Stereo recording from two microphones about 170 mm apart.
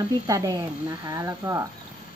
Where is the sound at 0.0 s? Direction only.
20° right (ahead or behind).